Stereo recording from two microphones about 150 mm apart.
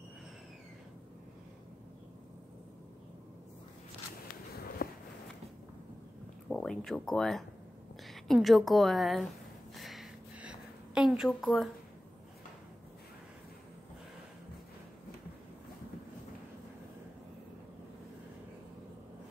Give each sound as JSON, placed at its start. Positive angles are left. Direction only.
{"t": 4.8, "sound": "walk", "side_deg": 75}
{"t": 6.5, "sound": "a woman's voice", "side_deg": 5}
{"t": 9.8, "sound": "a sound", "side_deg": 0}